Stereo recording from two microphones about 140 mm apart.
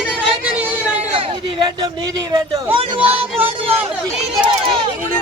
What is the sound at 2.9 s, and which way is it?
Speech, 40° right (ahead or behind).